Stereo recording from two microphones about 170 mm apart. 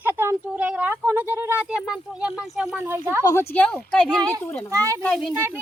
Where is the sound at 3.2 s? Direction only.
15° left (ahead or behind).